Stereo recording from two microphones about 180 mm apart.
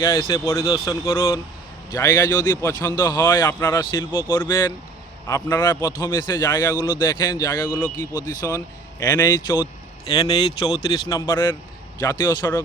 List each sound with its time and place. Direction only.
0.2 s a man's voice: 15° left (ahead or behind)
3.9 s a man's voice: 25° left (ahead or behind)
5.3 s a man's voice: 10° left (ahead or behind)